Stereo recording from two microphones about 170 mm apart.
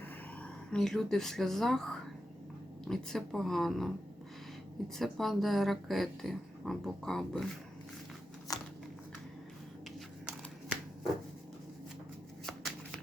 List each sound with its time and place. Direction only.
0.4 s speech: 5° left (ahead or behind)
4.9 s speech: centre (ahead or behind)
8.5 s a sound: 20° left (ahead or behind)